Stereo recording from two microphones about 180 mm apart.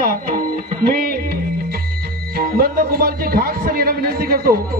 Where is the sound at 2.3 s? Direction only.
55° right (ahead or behind).